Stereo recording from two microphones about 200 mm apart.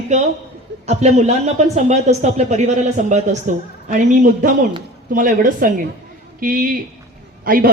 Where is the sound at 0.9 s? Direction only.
35° right (ahead or behind).